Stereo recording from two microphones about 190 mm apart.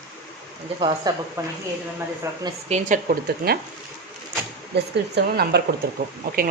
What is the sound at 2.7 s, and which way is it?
Speech, 45° right (ahead or behind).